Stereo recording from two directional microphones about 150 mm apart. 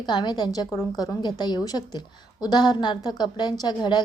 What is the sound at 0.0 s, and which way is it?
A woman's voice, 30° left (ahead or behind).